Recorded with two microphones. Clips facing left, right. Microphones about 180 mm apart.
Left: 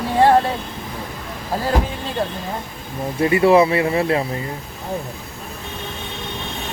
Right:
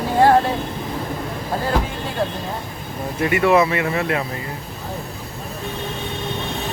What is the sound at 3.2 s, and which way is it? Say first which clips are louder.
Speech: left 3 dB; 30° left (ahead or behind).